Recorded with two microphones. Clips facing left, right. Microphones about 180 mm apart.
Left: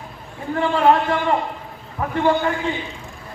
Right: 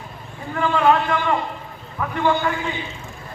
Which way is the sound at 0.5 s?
35° left (ahead or behind).